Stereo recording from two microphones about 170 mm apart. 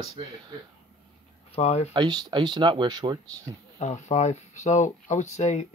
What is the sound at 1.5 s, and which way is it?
Speech, 40° left (ahead or behind).